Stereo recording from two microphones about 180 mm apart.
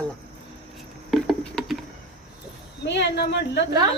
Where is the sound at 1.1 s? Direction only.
Centre (ahead or behind).